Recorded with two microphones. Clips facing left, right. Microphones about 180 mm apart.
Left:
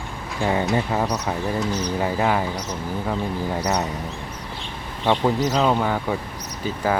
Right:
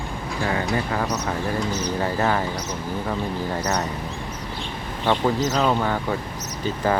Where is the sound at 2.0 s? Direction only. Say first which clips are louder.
Left 1 dB; 10° left (ahead or behind).